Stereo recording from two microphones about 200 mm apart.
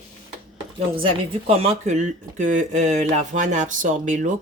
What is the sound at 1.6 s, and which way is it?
Speech, 35° right (ahead or behind).